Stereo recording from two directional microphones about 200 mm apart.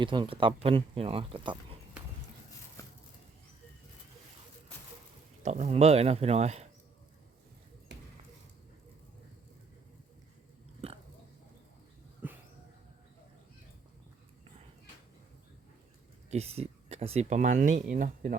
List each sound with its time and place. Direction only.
0.0 s speech: 25° right (ahead or behind)
5.4 s speech: 35° right (ahead or behind)
12.2 s a sound: 10° right (ahead or behind)
16.3 s speech: 30° right (ahead or behind)